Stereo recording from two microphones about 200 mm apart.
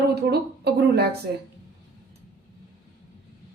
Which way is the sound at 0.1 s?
55° right (ahead or behind).